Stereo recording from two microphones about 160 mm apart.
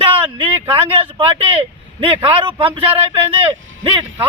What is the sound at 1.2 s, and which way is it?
Speech, 35° right (ahead or behind).